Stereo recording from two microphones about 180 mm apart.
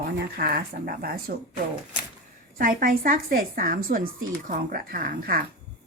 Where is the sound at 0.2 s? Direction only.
60° right (ahead or behind).